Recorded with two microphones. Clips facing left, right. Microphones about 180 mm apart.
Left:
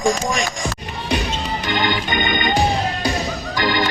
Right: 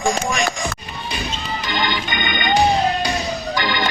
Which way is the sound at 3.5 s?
45° left (ahead or behind).